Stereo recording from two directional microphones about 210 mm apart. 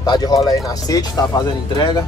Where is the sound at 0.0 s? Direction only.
20° left (ahead or behind).